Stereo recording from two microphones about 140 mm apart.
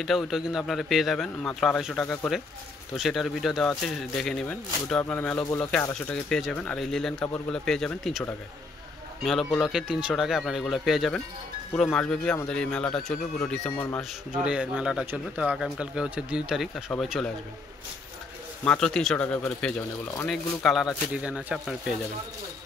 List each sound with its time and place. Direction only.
0.0 s speech: centre (ahead or behind)
9.2 s speech: centre (ahead or behind)
14.3 s speech: 5° right (ahead or behind)
18.6 s speech: 5° left (ahead or behind)